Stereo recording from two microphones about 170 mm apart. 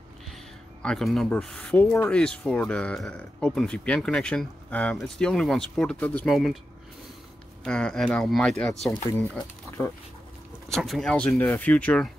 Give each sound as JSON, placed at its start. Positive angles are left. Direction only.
{"t": 0.8, "sound": "speech", "side_deg": 0}
{"t": 7.6, "sound": "speech", "side_deg": 5}
{"t": 10.7, "sound": "speech", "side_deg": 0}